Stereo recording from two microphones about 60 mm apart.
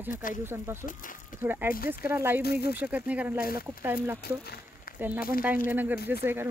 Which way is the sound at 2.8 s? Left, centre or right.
Right.